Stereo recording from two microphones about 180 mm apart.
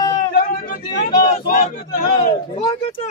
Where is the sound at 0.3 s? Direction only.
55° left (ahead or behind).